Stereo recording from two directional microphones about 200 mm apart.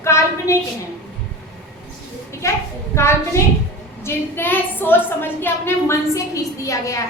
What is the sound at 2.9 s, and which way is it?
A woman's voice, 15° left (ahead or behind).